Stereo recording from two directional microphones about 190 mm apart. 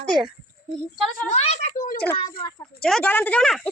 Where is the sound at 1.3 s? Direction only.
40° left (ahead or behind).